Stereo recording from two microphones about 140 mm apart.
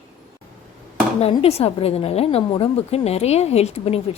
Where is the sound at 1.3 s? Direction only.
45° left (ahead or behind).